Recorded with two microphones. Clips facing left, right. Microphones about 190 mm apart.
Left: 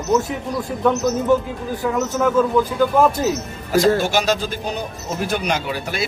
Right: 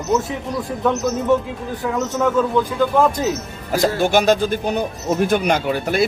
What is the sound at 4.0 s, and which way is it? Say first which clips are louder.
Speech: right 4 dB; 55° right (ahead or behind).